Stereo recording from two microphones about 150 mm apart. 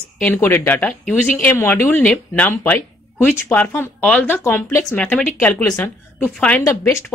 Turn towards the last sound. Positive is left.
turn(degrees=20)  # may be behind; listen again after turning